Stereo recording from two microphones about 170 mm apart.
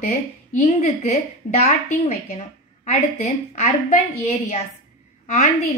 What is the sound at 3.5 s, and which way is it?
Speech, 40° left (ahead or behind).